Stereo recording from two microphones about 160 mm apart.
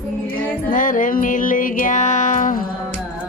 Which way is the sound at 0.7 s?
55° left (ahead or behind).